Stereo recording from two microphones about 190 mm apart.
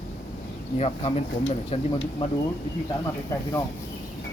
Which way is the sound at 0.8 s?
35° left (ahead or behind).